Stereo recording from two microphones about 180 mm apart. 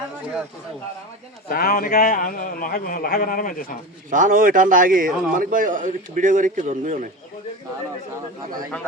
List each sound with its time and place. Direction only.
1.5 s a man's voice: 55° left (ahead or behind)
4.1 s a man's voice: 45° right (ahead or behind)